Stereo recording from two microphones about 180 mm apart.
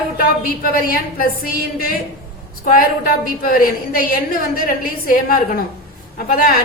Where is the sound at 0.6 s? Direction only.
55° left (ahead or behind).